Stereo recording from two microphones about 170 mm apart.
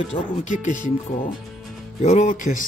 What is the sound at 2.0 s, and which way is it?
Speech, 45° left (ahead or behind).